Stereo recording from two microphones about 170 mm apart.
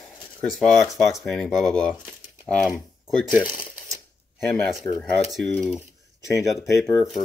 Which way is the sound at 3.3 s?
5° right (ahead or behind).